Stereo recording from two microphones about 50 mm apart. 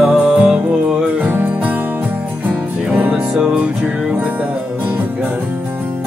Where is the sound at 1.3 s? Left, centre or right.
Right.